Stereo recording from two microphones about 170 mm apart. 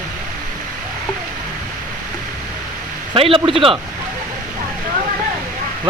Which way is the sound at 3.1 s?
35° right (ahead or behind).